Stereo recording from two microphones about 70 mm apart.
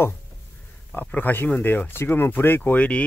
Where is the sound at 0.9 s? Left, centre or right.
Left.